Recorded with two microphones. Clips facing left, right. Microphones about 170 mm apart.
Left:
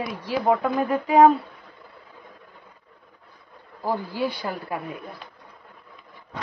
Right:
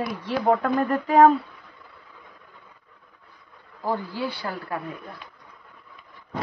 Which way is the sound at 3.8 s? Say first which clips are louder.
Left 2 dB; 10° left (ahead or behind).